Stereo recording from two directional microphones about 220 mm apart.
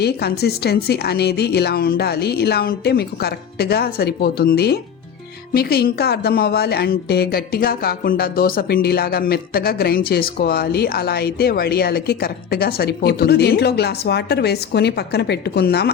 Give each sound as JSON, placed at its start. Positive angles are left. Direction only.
{"t": 0.0, "sound": "a woman's voice", "side_deg": 45}